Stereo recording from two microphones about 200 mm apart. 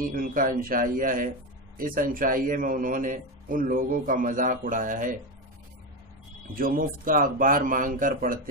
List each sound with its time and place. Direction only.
0.0 s a man's voice: 45° right (ahead or behind)
6.4 s a man's voice: 45° right (ahead or behind)